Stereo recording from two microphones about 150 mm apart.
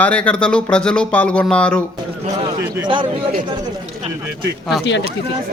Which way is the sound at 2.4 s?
30° right (ahead or behind).